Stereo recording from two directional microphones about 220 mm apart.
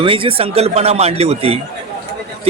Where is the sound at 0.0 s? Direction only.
25° right (ahead or behind).